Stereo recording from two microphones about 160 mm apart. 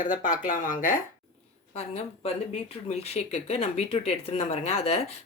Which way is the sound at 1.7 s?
40° left (ahead or behind).